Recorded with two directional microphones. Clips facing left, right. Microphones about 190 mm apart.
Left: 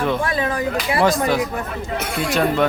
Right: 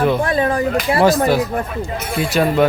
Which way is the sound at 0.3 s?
30° right (ahead or behind).